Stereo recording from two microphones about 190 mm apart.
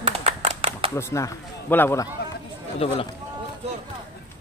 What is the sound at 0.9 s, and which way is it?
Speech, 15° left (ahead or behind).